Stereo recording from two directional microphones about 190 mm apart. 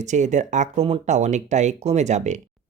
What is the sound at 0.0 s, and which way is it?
Speech, 40° right (ahead or behind).